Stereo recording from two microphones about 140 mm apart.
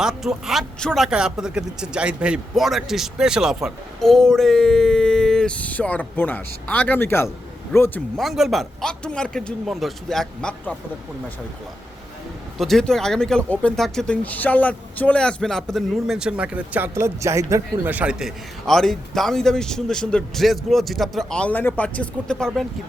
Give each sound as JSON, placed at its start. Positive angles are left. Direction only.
{"t": 0.0, "sound": "a man's voice", "side_deg": -5}
{"t": 8.1, "sound": "speech", "side_deg": 0}
{"t": 12.5, "sound": "speech", "side_deg": 0}